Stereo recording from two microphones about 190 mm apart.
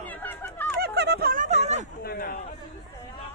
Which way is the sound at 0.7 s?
60° right (ahead or behind).